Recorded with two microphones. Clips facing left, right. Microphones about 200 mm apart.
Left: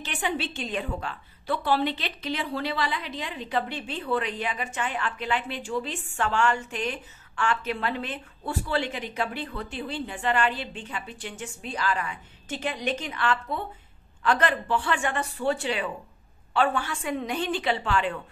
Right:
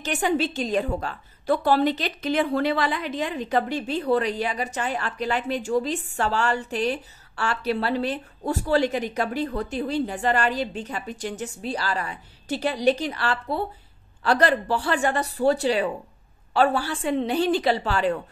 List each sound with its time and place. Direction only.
0.0 s a woman's voice: 40° right (ahead or behind)